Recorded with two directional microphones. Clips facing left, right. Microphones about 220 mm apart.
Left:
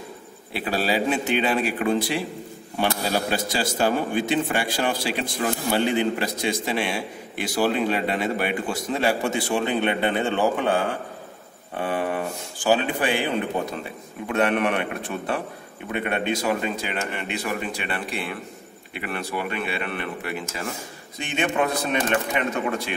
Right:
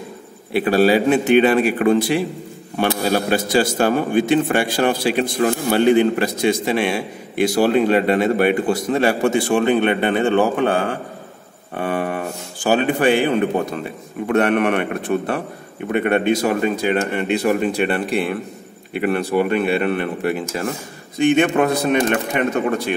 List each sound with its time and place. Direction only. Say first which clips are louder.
0.5 s a man's voice: right 10 dB; 55° right (ahead or behind)
11.8 s a man's voice: right 3 dB; 60° right (ahead or behind); by 20.3 s 45° right (ahead or behind)
21.2 s speech: right 9 dB; 55° right (ahead or behind)